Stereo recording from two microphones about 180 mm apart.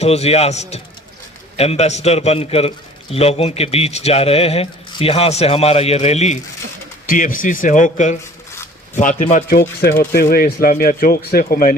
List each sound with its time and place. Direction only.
0.0 s a man's voice: 35° left (ahead or behind); by 11.7 s 55° left (ahead or behind)